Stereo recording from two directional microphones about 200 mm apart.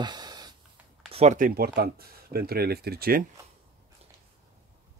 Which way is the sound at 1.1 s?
35° right (ahead or behind).